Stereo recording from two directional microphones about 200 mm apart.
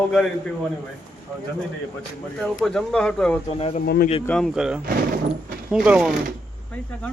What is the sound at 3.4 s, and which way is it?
Speech, 30° left (ahead or behind).